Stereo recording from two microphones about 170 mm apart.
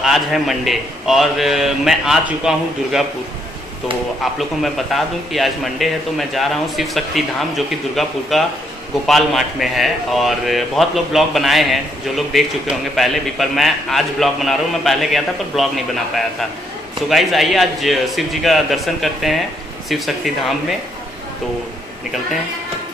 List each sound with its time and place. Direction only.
0.0 s a man's voice: centre (ahead or behind)
4.2 s a man's voice: centre (ahead or behind)